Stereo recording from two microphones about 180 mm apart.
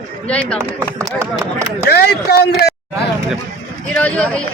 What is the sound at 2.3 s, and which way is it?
Speech, 65° left (ahead or behind).